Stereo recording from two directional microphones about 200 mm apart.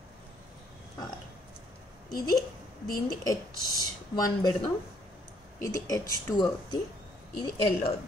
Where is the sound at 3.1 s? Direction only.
20° left (ahead or behind).